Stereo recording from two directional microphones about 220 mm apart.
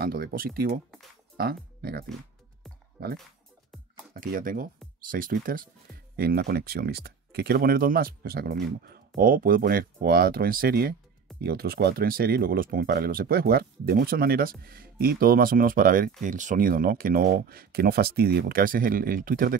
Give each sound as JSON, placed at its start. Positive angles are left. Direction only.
{"t": 0.0, "sound": "speech", "side_deg": -45}